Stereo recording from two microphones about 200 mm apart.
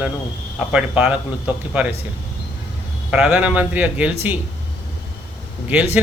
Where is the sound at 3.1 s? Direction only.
5° right (ahead or behind).